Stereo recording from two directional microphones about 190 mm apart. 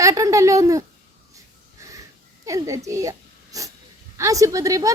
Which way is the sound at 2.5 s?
15° right (ahead or behind).